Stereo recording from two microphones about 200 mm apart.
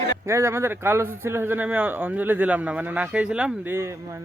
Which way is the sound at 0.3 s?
15° right (ahead or behind).